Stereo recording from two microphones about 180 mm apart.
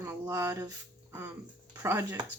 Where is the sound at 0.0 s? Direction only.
15° right (ahead or behind).